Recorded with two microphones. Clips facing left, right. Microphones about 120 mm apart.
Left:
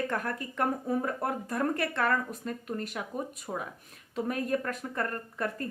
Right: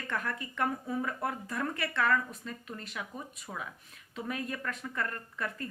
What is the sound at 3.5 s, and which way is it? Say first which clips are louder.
Speech: left 4 dB; 20° left (ahead or behind).